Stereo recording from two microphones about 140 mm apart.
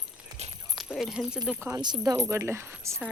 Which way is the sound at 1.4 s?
15° right (ahead or behind).